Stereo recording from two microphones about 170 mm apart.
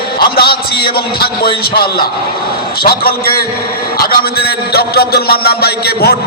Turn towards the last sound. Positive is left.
turn(degrees=65)  # may be behind; listen again after turning